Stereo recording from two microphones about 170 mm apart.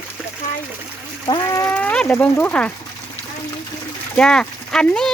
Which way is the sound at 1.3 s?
25° left (ahead or behind).